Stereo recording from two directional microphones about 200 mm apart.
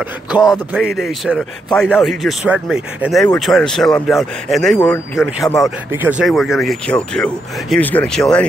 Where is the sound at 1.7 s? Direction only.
Centre (ahead or behind).